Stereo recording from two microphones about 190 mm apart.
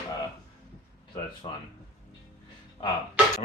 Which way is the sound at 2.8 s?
25° left (ahead or behind).